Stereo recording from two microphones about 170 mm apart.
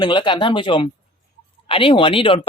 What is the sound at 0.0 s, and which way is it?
Speech, 30° left (ahead or behind).